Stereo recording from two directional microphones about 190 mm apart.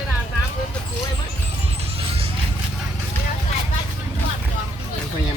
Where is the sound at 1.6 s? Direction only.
30° right (ahead or behind).